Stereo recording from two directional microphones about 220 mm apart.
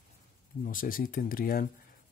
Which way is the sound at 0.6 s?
40° left (ahead or behind).